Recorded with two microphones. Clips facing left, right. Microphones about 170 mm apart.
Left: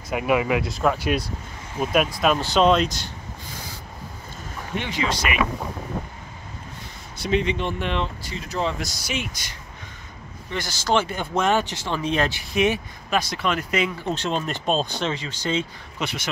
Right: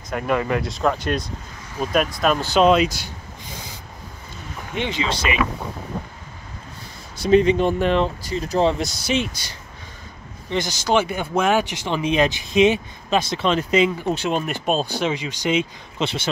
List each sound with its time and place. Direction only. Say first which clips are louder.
0.1 s speech: even; 10° left (ahead or behind); by 3.1 s 10° right (ahead or behind)
4.7 s speech: right 2 dB; 25° right (ahead or behind)
7.2 s speech: right 8 dB; 40° right (ahead or behind)
10.5 s speech: right 3 dB; 20° right (ahead or behind)
14.1 s speech: right 3 dB; 10° right (ahead or behind)
16.0 s speech: right 5 dB; 25° right (ahead or behind)